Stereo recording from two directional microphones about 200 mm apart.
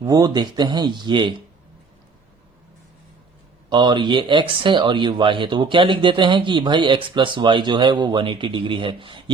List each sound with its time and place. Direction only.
0.0 s speech: 20° right (ahead or behind)
3.7 s speech: 25° right (ahead or behind)